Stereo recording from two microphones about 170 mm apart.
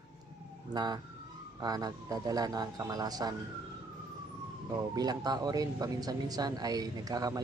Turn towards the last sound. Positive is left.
turn(degrees=-20)  # may be behind; listen again after turning